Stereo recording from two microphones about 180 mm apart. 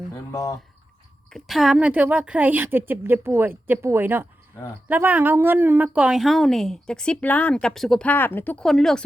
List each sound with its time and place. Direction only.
0.1 s speech: 15° left (ahead or behind)
1.3 s a woman's voice: centre (ahead or behind)